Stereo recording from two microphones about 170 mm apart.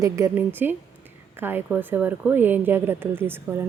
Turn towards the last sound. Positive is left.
turn(degrees=-15)  # may be behind; listen again after turning